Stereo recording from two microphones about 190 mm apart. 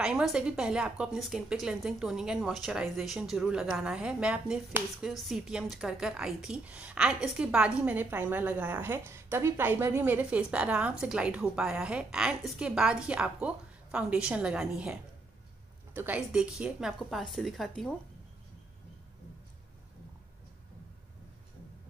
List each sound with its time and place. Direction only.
0.0 s a woman's voice: 5° right (ahead or behind)